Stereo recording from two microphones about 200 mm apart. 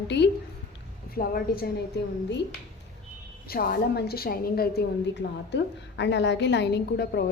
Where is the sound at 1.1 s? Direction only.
50° left (ahead or behind).